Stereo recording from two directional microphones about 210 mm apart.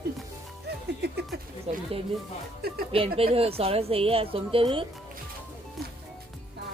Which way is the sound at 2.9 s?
25° right (ahead or behind).